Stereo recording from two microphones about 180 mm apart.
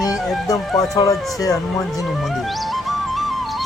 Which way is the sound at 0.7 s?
20° left (ahead or behind).